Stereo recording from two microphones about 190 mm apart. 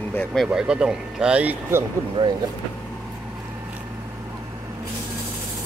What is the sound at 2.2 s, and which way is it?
Speech, 25° right (ahead or behind).